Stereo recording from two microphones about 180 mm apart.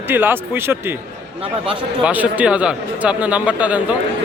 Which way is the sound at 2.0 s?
10° right (ahead or behind).